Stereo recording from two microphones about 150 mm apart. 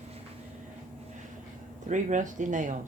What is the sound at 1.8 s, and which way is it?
Speech, 55° right (ahead or behind).